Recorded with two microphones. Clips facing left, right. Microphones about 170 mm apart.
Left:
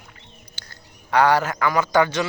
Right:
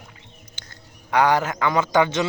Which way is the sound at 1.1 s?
20° right (ahead or behind).